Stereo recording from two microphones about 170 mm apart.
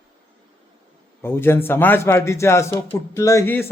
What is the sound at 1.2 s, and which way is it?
A man's voice, 15° left (ahead or behind).